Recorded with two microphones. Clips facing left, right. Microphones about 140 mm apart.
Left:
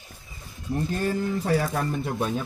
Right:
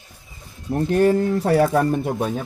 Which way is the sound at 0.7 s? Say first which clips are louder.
Right 9 dB; 65° right (ahead or behind).